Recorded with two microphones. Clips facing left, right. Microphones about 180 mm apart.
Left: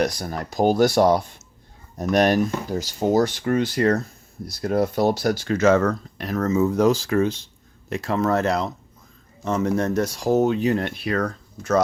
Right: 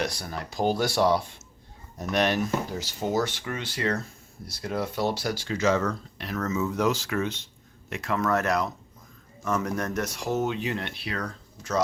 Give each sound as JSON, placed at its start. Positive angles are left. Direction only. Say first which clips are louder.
{"t": 0.0, "sound": "speech", "louder": "left 7 dB", "side_deg": 40}